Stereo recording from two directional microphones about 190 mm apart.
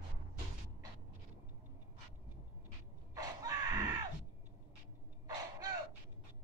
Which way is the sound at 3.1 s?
15° right (ahead or behind).